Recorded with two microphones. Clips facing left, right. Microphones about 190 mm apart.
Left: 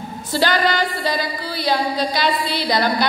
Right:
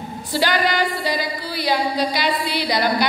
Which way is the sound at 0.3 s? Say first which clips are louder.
Left 1 dB; 15° right (ahead or behind).